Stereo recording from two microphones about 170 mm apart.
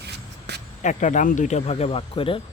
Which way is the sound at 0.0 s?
80° right.